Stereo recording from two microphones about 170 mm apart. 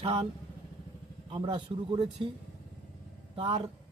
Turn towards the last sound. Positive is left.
turn(degrees=-30)  # may be behind; listen again after turning